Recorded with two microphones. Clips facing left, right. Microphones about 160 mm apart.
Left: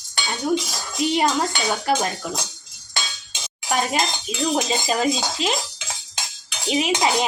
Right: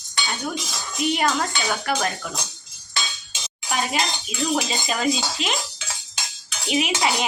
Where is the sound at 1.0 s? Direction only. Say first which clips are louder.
Left 2 dB; 30° left (ahead or behind).